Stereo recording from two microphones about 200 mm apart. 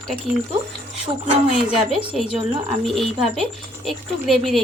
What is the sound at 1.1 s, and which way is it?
Speech, 20° right (ahead or behind).